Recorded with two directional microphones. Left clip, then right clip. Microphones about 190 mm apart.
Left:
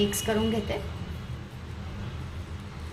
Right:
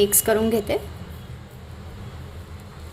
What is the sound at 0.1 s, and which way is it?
Speech, 60° right (ahead or behind).